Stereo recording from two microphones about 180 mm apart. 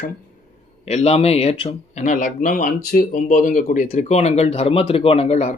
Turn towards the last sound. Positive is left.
turn(degrees=40)  # may be behind; listen again after turning